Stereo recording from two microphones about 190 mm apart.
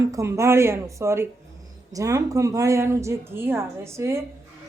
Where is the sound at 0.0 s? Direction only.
15° right (ahead or behind).